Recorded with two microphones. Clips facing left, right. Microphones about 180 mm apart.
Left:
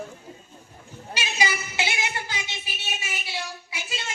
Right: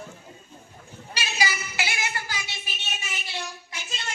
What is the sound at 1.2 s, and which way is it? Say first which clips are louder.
Speech: left 1 dB; 20° left (ahead or behind).